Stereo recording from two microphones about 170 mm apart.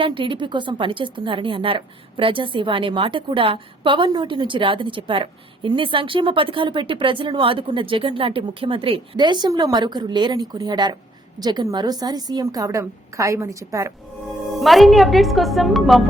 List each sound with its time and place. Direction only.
0.0 s a woman's voice: 30° right (ahead or behind)
14.6 s speech: centre (ahead or behind)